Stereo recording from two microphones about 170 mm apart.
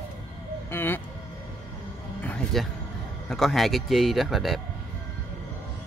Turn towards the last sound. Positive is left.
turn(degrees=0)  # may be behind; listen again after turning